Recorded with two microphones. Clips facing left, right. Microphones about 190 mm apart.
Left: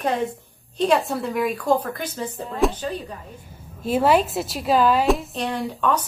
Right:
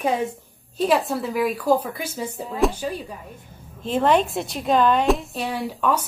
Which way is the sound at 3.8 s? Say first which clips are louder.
Left 1 dB; 10° left (ahead or behind).